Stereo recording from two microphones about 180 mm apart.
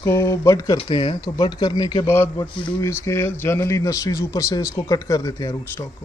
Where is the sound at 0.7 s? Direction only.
30° left (ahead or behind).